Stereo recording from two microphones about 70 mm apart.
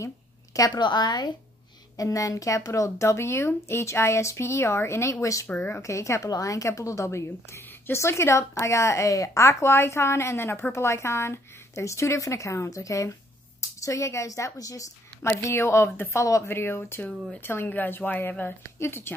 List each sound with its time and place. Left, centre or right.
0.7 s a woman's voice: left
2.0 s a woman's voice: left
5.2 s a woman's voice: left
5.5 s a woman's voice: left
5.8 s a woman's voice: left
15.2 s a woman's voice: left
16.4 s a woman's voice: left